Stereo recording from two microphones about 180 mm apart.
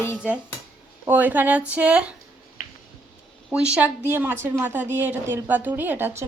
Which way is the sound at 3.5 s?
5° right (ahead or behind).